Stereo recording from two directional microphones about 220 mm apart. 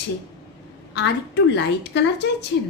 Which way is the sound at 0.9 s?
50° left (ahead or behind).